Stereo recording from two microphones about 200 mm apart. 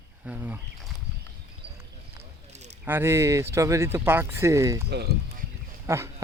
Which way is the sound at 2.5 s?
35° right (ahead or behind).